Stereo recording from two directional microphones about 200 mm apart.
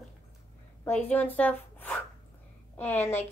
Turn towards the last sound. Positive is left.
turn(degrees=10)  # may be behind; listen again after turning